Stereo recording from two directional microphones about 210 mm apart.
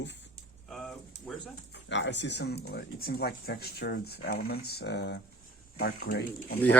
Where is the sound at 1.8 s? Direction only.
60° left (ahead or behind).